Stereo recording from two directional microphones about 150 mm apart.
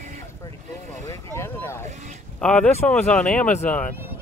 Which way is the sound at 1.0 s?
20° left (ahead or behind).